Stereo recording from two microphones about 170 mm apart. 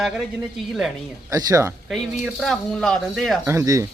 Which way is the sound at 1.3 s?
20° right (ahead or behind).